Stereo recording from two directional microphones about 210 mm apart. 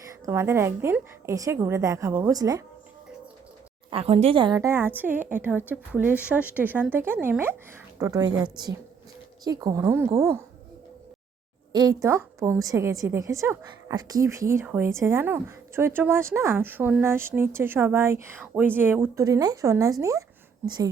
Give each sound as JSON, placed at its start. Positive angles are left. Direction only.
{"t": 0.3, "sound": "a woman's voice", "side_deg": -10}
{"t": 3.8, "sound": "a woman's voice", "side_deg": -25}
{"t": 11.7, "sound": "a woman's voice", "side_deg": -20}